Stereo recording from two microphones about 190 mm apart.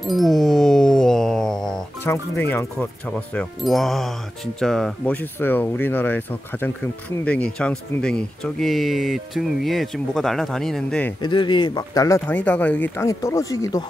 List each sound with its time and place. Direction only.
0.0 s music: centre (ahead or behind)
2.0 s speech: 10° left (ahead or behind)
3.3 s speech: centre (ahead or behind)
11.2 s speech: 25° left (ahead or behind)